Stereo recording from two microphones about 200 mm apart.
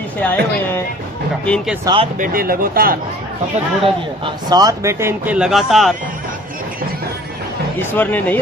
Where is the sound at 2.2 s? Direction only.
45° right (ahead or behind).